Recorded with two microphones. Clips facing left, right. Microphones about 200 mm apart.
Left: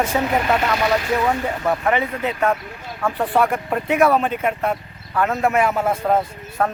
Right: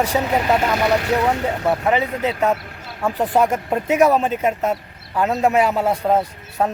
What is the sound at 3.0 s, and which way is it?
Speech, 15° right (ahead or behind).